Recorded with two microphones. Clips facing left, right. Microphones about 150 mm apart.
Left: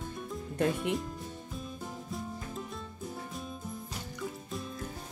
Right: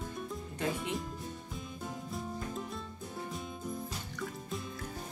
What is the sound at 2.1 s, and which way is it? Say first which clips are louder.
Music: right 1 dB; centre (ahead or behind).